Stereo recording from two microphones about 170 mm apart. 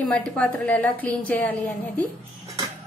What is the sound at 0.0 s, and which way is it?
A woman's voice, 5° left (ahead or behind).